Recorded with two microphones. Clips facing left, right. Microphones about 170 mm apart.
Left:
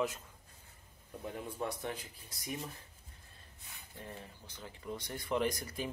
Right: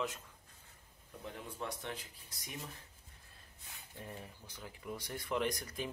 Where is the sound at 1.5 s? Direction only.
5° left (ahead or behind).